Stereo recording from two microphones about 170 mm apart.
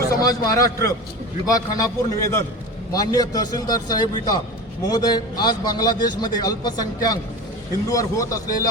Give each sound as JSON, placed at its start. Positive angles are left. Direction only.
{"t": 0.2, "sound": "a man's voice", "side_deg": 20}